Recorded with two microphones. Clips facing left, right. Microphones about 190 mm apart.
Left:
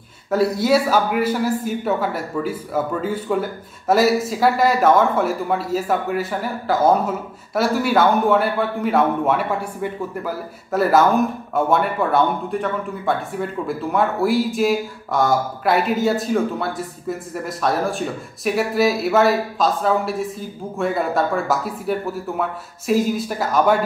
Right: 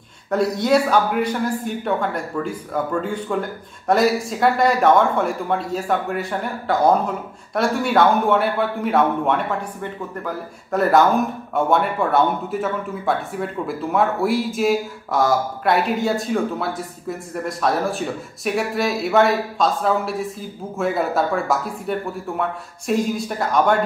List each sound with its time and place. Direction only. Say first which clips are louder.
0.3 s speech: left 1 dB; 5° left (ahead or behind)